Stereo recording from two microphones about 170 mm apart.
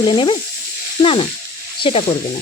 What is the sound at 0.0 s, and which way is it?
A woman's voice, 25° left (ahead or behind).